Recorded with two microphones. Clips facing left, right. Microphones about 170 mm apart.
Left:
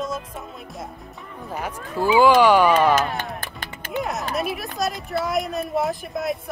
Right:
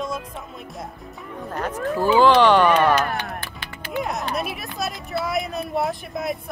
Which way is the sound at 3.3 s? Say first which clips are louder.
Even; 45° left (ahead or behind).